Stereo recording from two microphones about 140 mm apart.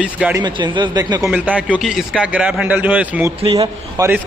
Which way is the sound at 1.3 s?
10° right (ahead or behind).